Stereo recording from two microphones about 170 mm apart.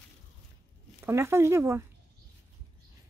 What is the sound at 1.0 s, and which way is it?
Speech, 15° right (ahead or behind).